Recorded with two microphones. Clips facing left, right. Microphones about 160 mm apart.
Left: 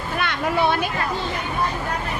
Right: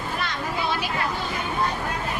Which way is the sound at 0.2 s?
65° left (ahead or behind).